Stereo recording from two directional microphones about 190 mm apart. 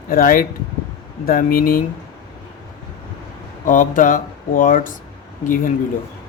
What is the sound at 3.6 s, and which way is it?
Speech, 45° left (ahead or behind).